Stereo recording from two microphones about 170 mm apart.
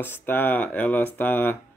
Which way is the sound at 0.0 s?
10° left (ahead or behind).